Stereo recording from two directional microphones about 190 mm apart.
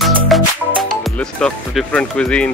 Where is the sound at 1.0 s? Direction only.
5° left (ahead or behind).